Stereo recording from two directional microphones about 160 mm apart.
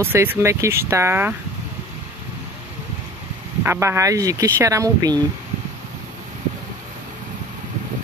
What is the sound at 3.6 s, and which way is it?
Speech, 15° right (ahead or behind).